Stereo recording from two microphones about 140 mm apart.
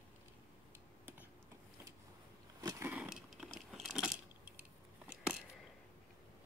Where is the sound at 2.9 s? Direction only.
5° right (ahead or behind).